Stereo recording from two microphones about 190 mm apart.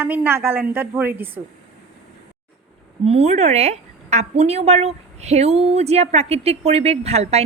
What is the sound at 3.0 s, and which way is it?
A woman's voice, 35° right (ahead or behind).